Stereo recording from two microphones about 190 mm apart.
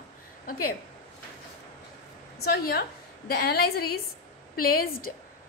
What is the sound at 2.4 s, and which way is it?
A woman's voice, 55° left (ahead or behind).